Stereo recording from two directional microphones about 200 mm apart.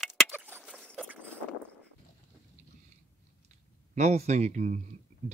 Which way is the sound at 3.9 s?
35° right (ahead or behind).